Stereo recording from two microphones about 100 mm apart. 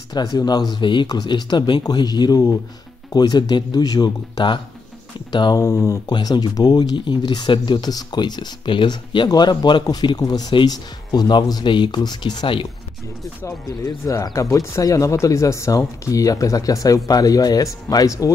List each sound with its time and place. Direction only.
0.1 s speech: 40° left (ahead or behind)
5.6 s speech: 30° left (ahead or behind)
6.0 s speech: 45° left (ahead or behind)
13.7 s speech: 35° left (ahead or behind)